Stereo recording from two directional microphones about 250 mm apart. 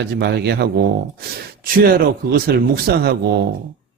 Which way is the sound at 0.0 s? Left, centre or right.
Right.